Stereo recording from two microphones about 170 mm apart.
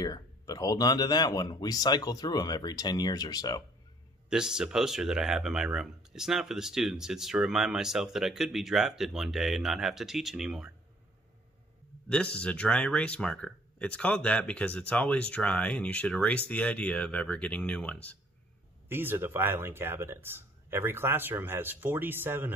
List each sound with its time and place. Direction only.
0.0 s speech: 20° left (ahead or behind)
4.3 s speech: 5° right (ahead or behind)
12.1 s speech: 5° left (ahead or behind)
18.9 s speech: 15° right (ahead or behind)